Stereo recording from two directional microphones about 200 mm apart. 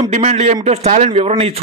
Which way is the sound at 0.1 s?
35° right (ahead or behind).